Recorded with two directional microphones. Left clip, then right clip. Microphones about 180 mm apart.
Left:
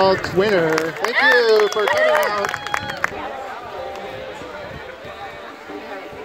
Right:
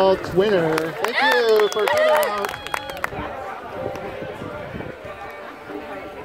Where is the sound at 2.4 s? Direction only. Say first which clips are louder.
Left 4 dB; 40° right (ahead or behind).